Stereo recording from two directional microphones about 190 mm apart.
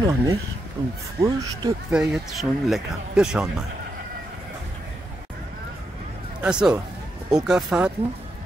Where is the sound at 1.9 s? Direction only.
5° right (ahead or behind).